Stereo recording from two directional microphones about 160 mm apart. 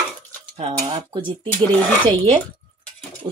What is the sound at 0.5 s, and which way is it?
Speech, 35° right (ahead or behind).